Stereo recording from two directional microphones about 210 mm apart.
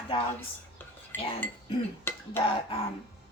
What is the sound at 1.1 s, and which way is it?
Cutlery, 10° left (ahead or behind).